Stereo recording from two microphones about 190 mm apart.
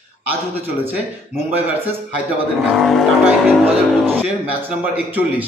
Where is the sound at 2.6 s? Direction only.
Centre (ahead or behind).